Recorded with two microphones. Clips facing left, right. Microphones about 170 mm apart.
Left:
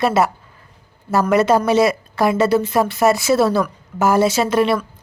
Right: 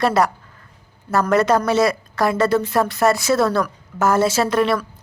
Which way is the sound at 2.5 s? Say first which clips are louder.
Left 2 dB; 5° left (ahead or behind).